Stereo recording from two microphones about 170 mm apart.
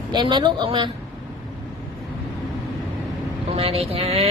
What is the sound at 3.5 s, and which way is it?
Speech, 35° right (ahead or behind).